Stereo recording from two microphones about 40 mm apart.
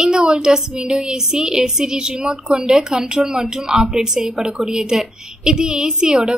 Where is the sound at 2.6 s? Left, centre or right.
Centre.